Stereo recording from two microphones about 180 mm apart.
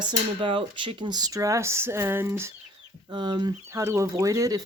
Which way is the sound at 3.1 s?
25° right (ahead or behind).